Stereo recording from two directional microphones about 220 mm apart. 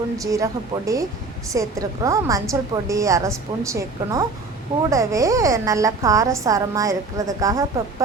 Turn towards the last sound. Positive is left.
turn(degrees=-15)  # may be behind; listen again after turning